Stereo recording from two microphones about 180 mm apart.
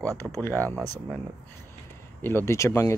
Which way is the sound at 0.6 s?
20° right (ahead or behind).